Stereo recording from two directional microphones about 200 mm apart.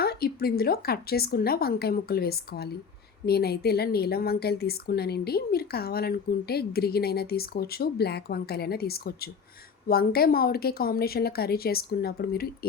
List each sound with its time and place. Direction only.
0.0 s a woman's voice: 50° left (ahead or behind)